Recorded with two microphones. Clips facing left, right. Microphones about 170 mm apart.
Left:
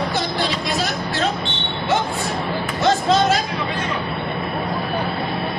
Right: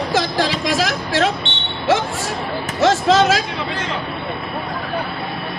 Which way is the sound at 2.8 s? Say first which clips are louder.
Right 3 dB; 90° right.